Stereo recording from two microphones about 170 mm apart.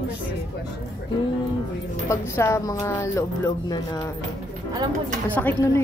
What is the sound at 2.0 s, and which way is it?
Speech, 15° left (ahead or behind).